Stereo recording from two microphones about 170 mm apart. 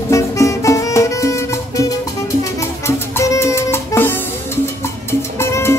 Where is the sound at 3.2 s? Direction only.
15° left (ahead or behind).